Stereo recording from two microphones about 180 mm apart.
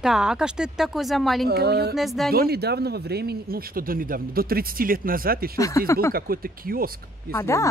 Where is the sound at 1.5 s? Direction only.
65° right (ahead or behind).